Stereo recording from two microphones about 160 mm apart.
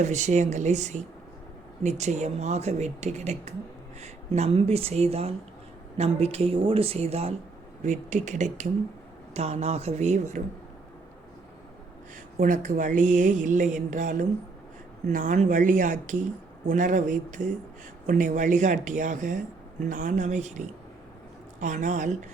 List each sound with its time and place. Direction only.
0.0 s speech: 50° right (ahead or behind)
12.4 s speech: 55° right (ahead or behind)